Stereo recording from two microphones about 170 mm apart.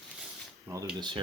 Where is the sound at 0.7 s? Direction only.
15° right (ahead or behind).